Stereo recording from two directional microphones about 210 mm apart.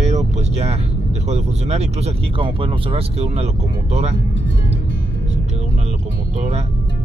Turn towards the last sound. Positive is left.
turn(degrees=-30)  # may be behind; listen again after turning